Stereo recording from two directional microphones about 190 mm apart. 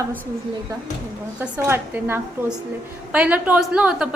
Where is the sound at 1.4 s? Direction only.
10° right (ahead or behind).